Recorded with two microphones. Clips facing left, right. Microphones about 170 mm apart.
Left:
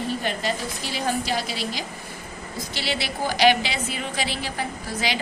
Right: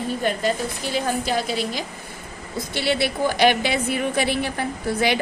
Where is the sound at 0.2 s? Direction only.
45° right (ahead or behind).